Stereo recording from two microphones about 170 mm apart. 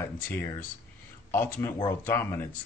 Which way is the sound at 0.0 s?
10° left (ahead or behind).